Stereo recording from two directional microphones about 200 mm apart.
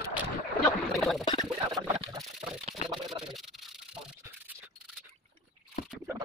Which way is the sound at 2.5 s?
Centre (ahead or behind).